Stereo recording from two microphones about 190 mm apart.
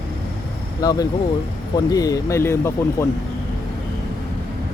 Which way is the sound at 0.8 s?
20° left (ahead or behind).